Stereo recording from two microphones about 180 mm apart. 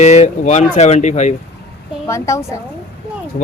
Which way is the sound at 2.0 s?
15° left (ahead or behind).